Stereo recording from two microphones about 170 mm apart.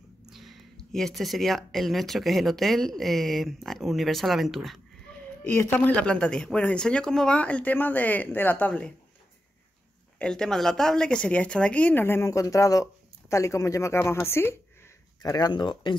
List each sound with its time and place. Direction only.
0.3 s speech: centre (ahead or behind)
5.1 s a sound: 5° left (ahead or behind)
5.4 s speech: 10° left (ahead or behind)
10.1 s speech: 5° left (ahead or behind); by 16.0 s 30° left (ahead or behind)